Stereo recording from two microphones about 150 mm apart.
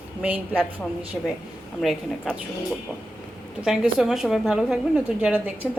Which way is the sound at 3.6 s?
5° right (ahead or behind).